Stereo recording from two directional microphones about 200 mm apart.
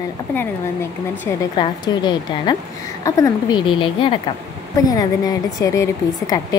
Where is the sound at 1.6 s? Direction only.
25° left (ahead or behind).